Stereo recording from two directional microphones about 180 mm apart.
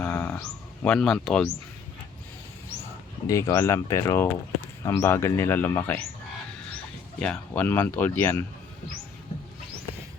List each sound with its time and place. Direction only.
0.0 s a sound: 15° left (ahead or behind)
3.2 s speech: 15° left (ahead or behind)
7.2 s speech: 5° left (ahead or behind)